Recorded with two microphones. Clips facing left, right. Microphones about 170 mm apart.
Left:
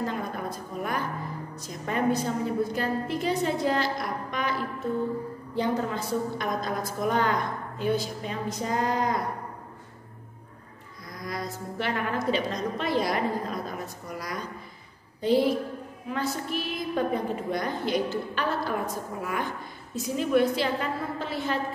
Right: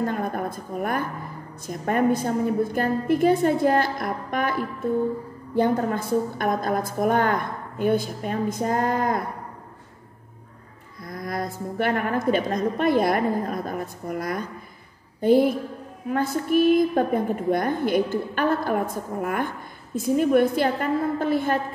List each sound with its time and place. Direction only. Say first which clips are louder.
0.0 s a sound: right 5 dB; 50° right (ahead or behind)
1.7 s a woman's voice: right 5 dB; 50° right (ahead or behind)
11.1 s a woman's voice: right 5 dB; 55° right (ahead or behind)